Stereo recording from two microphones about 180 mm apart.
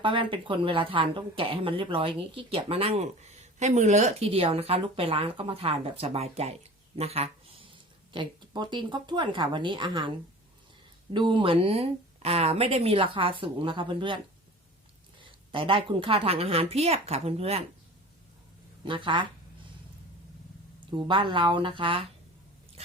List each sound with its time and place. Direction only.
0.0 s speech: 30° right (ahead or behind)
11.1 s speech: 25° right (ahead or behind)
15.2 s speech: 30° right (ahead or behind)
18.9 s speech: 25° right (ahead or behind)
20.9 s speech: 25° right (ahead or behind)